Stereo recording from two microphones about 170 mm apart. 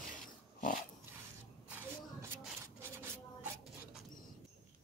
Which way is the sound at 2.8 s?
15° right (ahead or behind).